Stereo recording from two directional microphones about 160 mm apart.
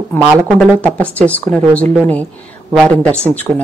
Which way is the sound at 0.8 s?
10° left (ahead or behind).